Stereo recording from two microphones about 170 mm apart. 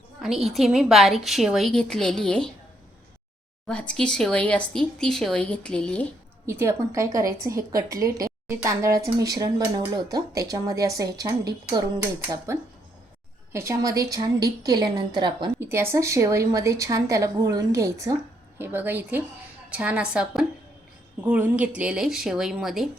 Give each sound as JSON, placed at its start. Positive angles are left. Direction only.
{"t": 0.2, "sound": "speech", "side_deg": 0}
{"t": 3.7, "sound": "speech", "side_deg": 5}
{"t": 6.4, "sound": "a woman's voice", "side_deg": -15}
{"t": 13.5, "sound": "a woman's voice", "side_deg": -15}
{"t": 15.6, "sound": "a woman's voice", "side_deg": -15}